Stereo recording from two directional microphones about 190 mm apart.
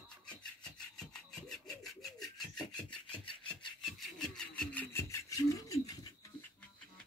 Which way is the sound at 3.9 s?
5° left (ahead or behind).